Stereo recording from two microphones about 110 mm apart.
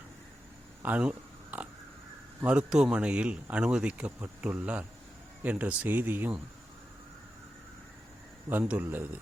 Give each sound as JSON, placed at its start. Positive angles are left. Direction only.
{"t": 0.8, "sound": "a sound", "side_deg": -15}
{"t": 2.4, "sound": "speech", "side_deg": -10}
{"t": 8.4, "sound": "speech", "side_deg": -15}